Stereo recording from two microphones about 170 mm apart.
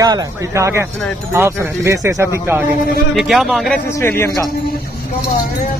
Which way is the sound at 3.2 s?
Centre (ahead or behind).